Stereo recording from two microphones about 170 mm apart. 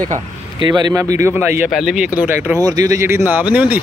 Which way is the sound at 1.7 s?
Centre (ahead or behind).